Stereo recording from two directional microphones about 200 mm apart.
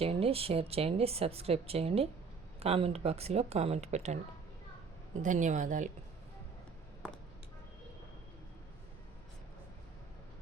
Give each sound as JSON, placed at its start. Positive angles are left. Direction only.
{"t": 0.0, "sound": "speech", "side_deg": -30}
{"t": 5.2, "sound": "speech", "side_deg": -40}